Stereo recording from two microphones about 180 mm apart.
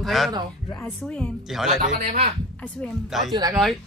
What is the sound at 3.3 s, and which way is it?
Speech, 20° right (ahead or behind).